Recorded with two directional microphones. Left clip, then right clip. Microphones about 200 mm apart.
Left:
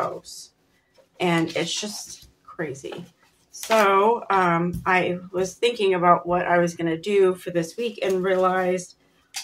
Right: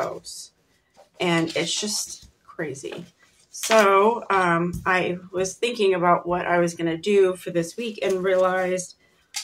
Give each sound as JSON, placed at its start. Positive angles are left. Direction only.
{"t": 0.2, "sound": "speech", "side_deg": 0}